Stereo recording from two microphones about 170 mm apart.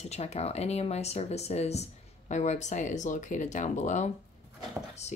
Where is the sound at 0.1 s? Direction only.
40° left (ahead or behind).